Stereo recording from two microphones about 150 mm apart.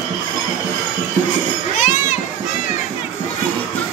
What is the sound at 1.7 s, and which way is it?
Children playing, 55° left (ahead or behind).